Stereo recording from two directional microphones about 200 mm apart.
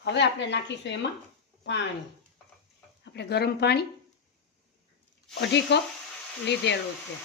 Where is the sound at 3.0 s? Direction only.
55° left (ahead or behind).